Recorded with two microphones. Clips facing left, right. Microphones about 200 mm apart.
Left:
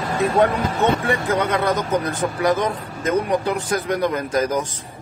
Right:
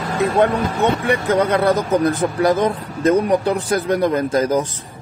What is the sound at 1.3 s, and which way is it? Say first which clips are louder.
Speech: right 6 dB; 30° right (ahead or behind).